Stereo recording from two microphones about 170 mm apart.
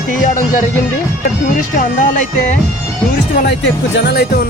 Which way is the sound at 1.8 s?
45° left (ahead or behind).